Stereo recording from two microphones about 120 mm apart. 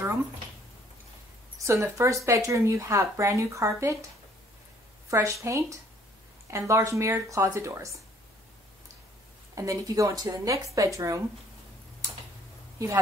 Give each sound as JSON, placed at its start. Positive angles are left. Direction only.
{"t": 1.7, "sound": "speech", "side_deg": -25}
{"t": 5.1, "sound": "speech", "side_deg": -25}
{"t": 9.6, "sound": "speech", "side_deg": -25}
{"t": 12.7, "sound": "speech", "side_deg": -25}